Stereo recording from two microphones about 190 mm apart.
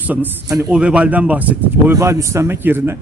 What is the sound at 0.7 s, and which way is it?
A man's voice, 5° right (ahead or behind).